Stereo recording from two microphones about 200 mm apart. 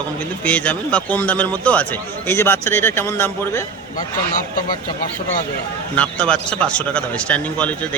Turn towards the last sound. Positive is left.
turn(degrees=5)  # may be behind; listen again after turning